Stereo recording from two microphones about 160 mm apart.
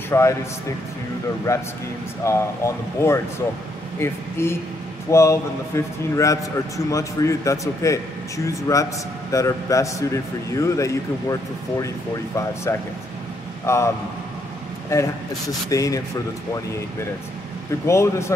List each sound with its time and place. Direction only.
0.1 s speech: 15° left (ahead or behind)
1.5 s speech: 20° left (ahead or behind)
12.7 s speech: 15° left (ahead or behind)
17.8 s speech: 15° left (ahead or behind)